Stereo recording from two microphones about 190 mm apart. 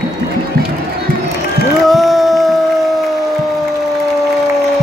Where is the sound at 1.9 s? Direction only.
Centre (ahead or behind).